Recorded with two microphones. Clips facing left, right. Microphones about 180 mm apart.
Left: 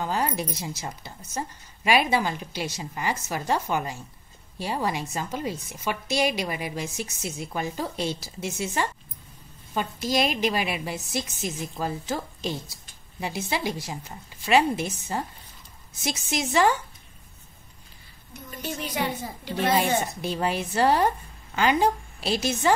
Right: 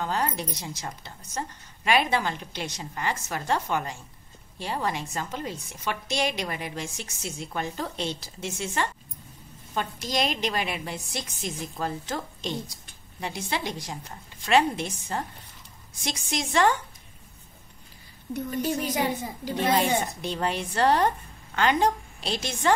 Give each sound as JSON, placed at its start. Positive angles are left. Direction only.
{"t": 0.0, "sound": "a woman's voice", "side_deg": 5}
{"t": 18.7, "sound": "a woman's voice", "side_deg": -40}
{"t": 20.2, "sound": "a woman's voice", "side_deg": 5}